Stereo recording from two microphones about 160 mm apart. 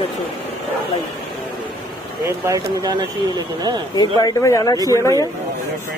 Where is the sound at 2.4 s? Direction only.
20° right (ahead or behind).